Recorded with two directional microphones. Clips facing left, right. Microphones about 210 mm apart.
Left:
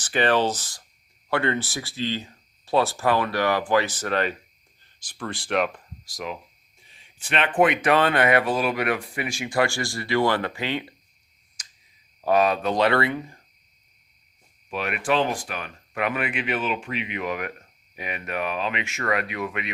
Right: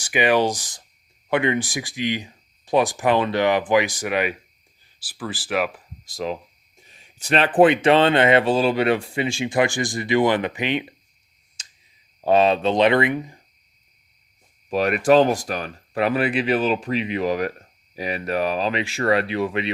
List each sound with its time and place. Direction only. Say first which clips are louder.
0.0 s speech: right 2 dB; 10° right (ahead or behind)
6.1 s speech: right 6 dB; 30° right (ahead or behind)
6.8 s speech: right 9 dB; 45° right (ahead or behind); by 10.9 s 20° right (ahead or behind)
11.6 s a sound: right 1 dB; 25° right (ahead or behind)
12.2 s speech: right 4 dB; 25° right (ahead or behind)
14.7 s speech: right 8 dB; 40° right (ahead or behind)